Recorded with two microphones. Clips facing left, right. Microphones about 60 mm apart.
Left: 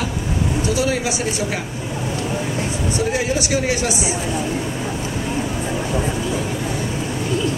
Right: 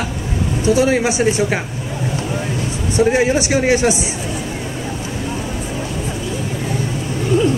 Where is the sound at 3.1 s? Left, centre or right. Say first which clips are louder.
Right 5 dB; right.